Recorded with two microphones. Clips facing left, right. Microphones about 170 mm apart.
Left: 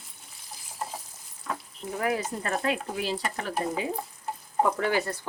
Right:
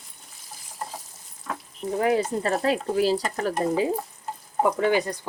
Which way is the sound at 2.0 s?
30° right (ahead or behind).